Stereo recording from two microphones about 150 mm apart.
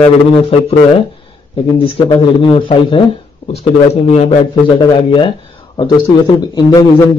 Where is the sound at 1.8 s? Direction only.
35° left (ahead or behind).